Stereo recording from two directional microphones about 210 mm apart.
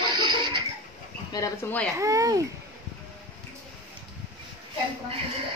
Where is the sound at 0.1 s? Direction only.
20° right (ahead or behind).